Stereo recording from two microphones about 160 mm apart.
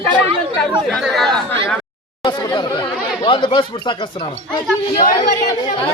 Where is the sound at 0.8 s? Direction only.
Centre (ahead or behind).